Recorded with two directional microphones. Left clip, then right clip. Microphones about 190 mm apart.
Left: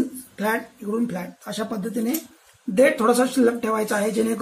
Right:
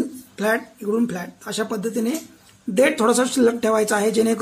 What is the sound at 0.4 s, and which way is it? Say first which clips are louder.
Speech: right 3 dB; 35° right (ahead or behind).